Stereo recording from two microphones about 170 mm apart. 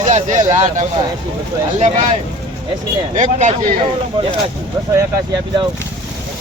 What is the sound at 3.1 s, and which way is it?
Speech, 45° right (ahead or behind).